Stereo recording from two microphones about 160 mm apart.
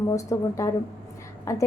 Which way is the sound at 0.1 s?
20° left (ahead or behind).